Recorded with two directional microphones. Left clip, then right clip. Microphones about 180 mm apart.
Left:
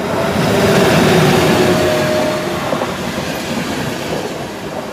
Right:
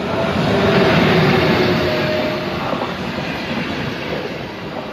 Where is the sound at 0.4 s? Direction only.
20° left (ahead or behind).